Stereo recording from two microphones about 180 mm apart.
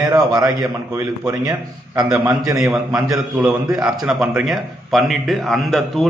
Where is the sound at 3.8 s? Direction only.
Centre (ahead or behind).